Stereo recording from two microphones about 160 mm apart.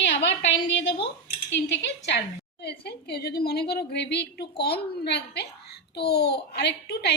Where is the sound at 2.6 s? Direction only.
90° left.